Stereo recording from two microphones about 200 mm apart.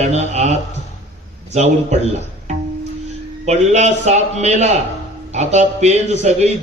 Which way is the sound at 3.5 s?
35° right (ahead or behind).